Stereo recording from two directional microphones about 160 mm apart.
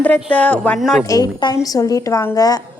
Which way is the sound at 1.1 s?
20° left (ahead or behind).